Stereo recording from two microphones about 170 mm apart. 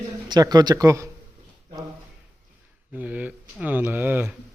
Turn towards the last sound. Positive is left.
turn(degrees=-10)  # may be behind; listen again after turning